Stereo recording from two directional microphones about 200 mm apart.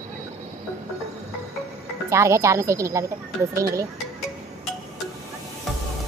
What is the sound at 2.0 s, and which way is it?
Speech, 15° right (ahead or behind).